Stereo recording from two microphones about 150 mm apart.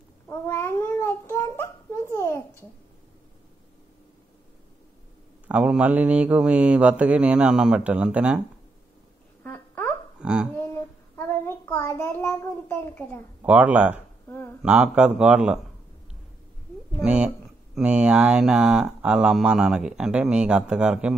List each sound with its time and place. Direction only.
0.3 s babbling: 15° left (ahead or behind)
5.5 s mantra: 5° right (ahead or behind)
9.4 s a sound: 10° left (ahead or behind)
10.1 s a sound: 5° right (ahead or behind)
11.1 s a child's voice: 15° left (ahead or behind)
13.4 s mantra: 10° right (ahead or behind)
17.0 s mantra: 5° right (ahead or behind)
17.7 s speech: 5° right (ahead or behind)